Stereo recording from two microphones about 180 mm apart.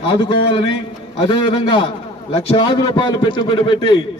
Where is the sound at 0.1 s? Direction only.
25° left (ahead or behind).